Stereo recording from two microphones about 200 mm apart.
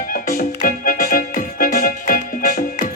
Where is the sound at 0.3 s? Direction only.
45° left (ahead or behind).